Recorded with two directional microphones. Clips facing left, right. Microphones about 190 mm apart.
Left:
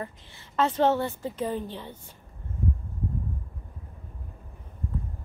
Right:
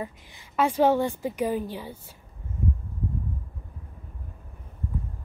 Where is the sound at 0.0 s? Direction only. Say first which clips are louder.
Right 2 dB; 10° right (ahead or behind).